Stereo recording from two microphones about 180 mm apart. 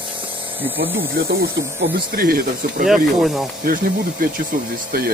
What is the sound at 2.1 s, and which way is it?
Speech, 55° right (ahead or behind).